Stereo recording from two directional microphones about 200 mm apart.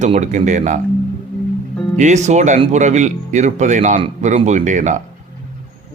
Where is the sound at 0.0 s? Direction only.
35° right (ahead or behind).